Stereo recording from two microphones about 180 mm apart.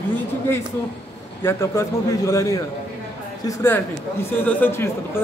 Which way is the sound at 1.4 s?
15° left (ahead or behind).